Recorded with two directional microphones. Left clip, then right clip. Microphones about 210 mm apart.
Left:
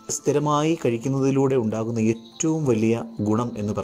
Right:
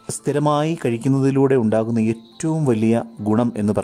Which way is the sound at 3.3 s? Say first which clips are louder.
Right 7 dB; 60° right (ahead or behind).